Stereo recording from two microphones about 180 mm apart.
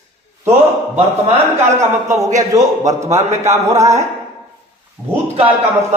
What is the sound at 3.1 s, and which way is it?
Speech, 40° right (ahead or behind).